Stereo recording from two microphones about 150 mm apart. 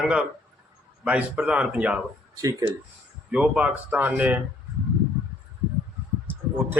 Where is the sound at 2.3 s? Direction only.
20° right (ahead or behind).